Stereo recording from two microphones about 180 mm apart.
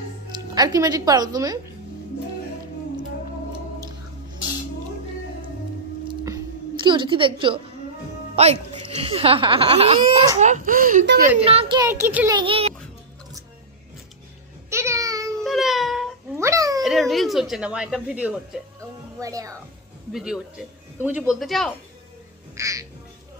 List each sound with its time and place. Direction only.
0.6 s a woman's voice: 20° right (ahead or behind)
6.0 s a sound: 20° right (ahead or behind)
8.4 s speech: 35° right (ahead or behind); by 11.1 s 50° right (ahead or behind)
11.4 s speech: 35° right (ahead or behind)
11.8 s speech: 15° right (ahead or behind)
12.3 s a woman's voice: 25° right (ahead or behind)
14.7 s music: 15° right (ahead or behind)
15.4 s a sound: centre (ahead or behind)
16.3 s cat: 15° right (ahead or behind)
16.8 s a sound: centre (ahead or behind)
19.1 s a woman's voice: 20° right (ahead or behind)
20.1 s speech: 5° right (ahead or behind)
22.6 s speech: 20° right (ahead or behind)